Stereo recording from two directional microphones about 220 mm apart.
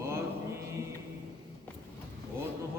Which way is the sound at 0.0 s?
10° right (ahead or behind).